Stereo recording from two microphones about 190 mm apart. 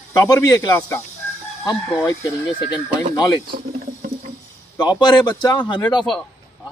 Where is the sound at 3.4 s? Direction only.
55° right (ahead or behind).